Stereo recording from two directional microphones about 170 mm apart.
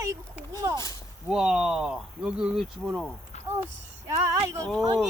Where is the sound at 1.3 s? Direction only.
5° right (ahead or behind).